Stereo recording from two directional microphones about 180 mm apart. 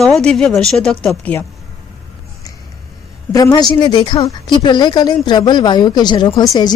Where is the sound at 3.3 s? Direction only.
20° left (ahead or behind).